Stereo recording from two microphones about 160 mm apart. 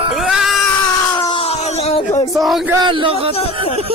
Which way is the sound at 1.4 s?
40° left (ahead or behind).